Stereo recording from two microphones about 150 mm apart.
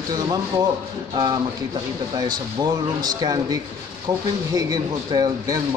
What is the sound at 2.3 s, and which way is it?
Speech, 25° right (ahead or behind).